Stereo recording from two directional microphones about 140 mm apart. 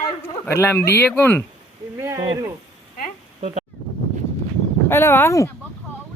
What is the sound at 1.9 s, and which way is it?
Speech, 20° right (ahead or behind).